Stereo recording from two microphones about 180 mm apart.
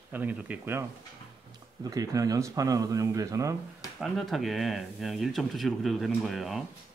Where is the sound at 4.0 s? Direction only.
Centre (ahead or behind).